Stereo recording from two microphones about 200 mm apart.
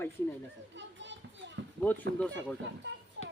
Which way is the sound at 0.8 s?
65° right (ahead or behind).